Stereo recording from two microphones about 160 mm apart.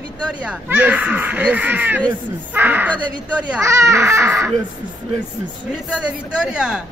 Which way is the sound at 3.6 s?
20° right (ahead or behind).